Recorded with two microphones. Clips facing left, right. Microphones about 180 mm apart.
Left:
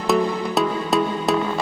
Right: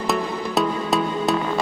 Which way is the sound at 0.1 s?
Centre (ahead or behind).